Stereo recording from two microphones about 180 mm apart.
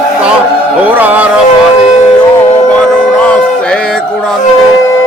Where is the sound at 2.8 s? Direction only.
5° left (ahead or behind).